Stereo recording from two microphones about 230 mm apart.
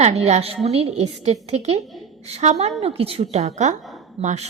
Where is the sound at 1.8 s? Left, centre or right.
Centre.